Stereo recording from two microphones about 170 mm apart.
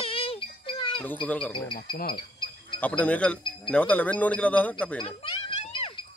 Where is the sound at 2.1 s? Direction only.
30° left (ahead or behind).